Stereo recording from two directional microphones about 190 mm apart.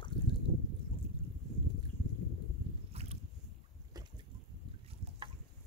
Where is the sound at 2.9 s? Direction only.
35° right (ahead or behind).